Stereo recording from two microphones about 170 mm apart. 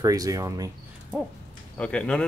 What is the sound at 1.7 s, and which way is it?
Speech, 5° left (ahead or behind).